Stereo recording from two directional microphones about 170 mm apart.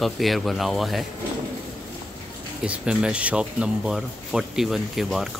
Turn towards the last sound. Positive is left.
turn(degrees=0)  # may be behind; listen again after turning